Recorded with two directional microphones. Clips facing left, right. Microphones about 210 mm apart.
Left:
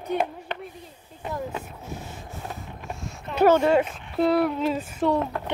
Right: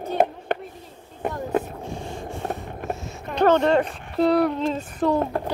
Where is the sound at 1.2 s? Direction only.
55° right (ahead or behind).